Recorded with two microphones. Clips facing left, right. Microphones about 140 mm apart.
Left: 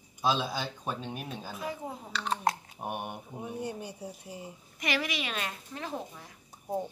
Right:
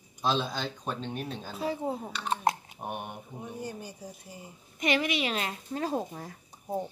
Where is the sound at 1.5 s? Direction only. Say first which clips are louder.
Right 8 dB; 30° right (ahead or behind).